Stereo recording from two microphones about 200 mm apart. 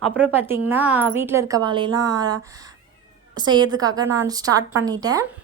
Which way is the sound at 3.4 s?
20° right (ahead or behind).